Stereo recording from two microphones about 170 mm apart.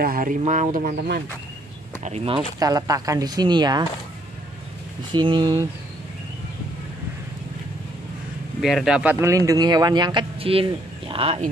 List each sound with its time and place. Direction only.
0.0 s speech: 55° right (ahead or behind)
2.0 s speech: 35° right (ahead or behind)
2.6 s speech: 20° right (ahead or behind)
5.1 s speech: 25° right (ahead or behind)
8.5 s speech: centre (ahead or behind); by 11.5 s 35° right (ahead or behind)